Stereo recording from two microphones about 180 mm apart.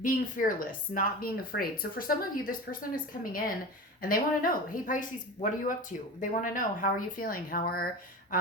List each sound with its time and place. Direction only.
0.0 s speech: 50° left (ahead or behind)